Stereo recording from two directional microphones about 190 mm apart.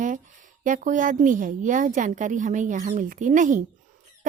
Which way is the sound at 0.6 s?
45° right (ahead or behind).